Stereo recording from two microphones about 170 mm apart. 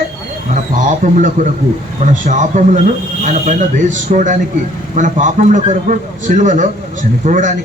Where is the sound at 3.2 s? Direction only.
45° right (ahead or behind).